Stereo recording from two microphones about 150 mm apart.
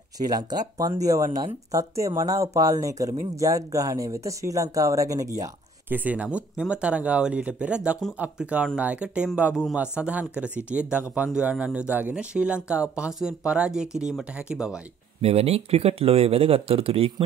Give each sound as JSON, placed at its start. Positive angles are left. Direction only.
{"t": 0.3, "sound": "speech", "side_deg": -25}
{"t": 15.2, "sound": "speech", "side_deg": -40}